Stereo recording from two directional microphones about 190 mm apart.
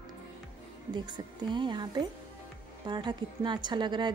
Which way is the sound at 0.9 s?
25° right (ahead or behind).